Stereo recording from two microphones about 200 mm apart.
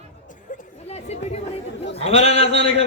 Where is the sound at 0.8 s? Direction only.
30° left (ahead or behind).